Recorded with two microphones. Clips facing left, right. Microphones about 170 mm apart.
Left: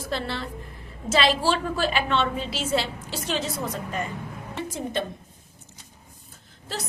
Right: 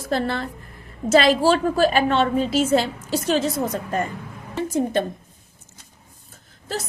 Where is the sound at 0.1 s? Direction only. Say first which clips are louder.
Right 7 dB; 50° right (ahead or behind).